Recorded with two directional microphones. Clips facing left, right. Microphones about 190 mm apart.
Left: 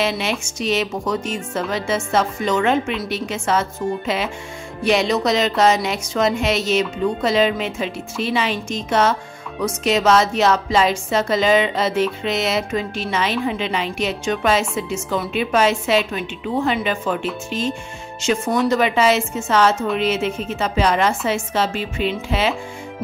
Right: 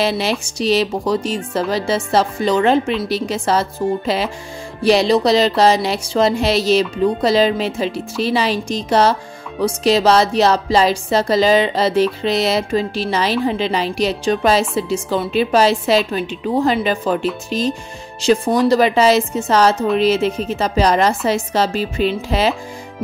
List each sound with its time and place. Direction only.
0.0 s speech: 35° right (ahead or behind)